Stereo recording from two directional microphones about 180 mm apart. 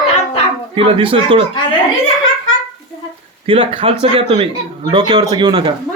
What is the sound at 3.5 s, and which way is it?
Speech, 30° right (ahead or behind).